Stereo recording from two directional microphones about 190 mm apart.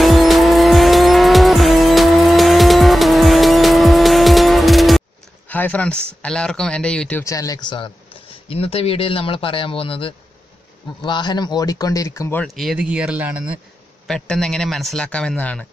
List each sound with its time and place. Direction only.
0.0 s vehicle: centre (ahead or behind)
5.5 s speech: 10° left (ahead or behind)
12.4 s a man's voice: centre (ahead or behind)
14.0 s a man's voice: 5° left (ahead or behind)